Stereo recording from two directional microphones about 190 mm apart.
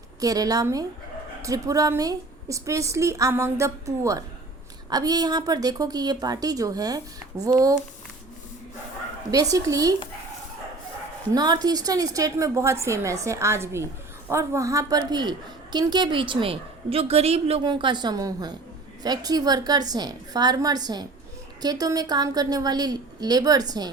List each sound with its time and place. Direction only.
0.2 s a woman's voice: 20° right (ahead or behind)
9.3 s a woman's voice: 20° right (ahead or behind)
11.3 s a woman's voice: 20° right (ahead or behind)